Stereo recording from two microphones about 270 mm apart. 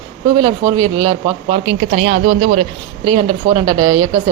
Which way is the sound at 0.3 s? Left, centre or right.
Centre.